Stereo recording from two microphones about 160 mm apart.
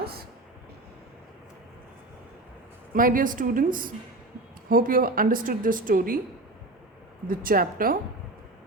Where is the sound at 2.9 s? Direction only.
60° right (ahead or behind).